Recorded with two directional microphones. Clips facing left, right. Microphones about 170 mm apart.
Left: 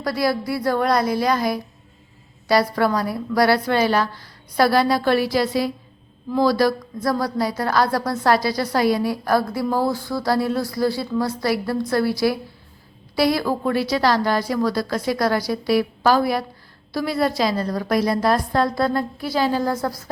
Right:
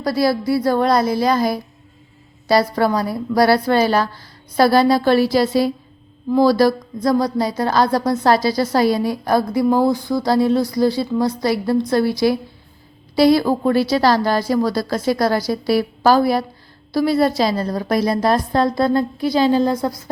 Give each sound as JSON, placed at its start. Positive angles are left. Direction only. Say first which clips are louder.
{"t": 0.0, "sound": "a woman's voice", "louder": "right 4 dB", "side_deg": -30}